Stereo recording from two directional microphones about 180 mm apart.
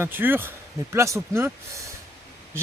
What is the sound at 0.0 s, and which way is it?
Speech, 10° right (ahead or behind).